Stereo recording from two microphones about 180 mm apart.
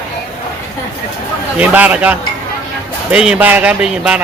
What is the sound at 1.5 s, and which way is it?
A man's voice, 10° right (ahead or behind).